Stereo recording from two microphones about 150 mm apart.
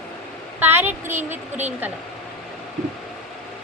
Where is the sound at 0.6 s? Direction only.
15° right (ahead or behind).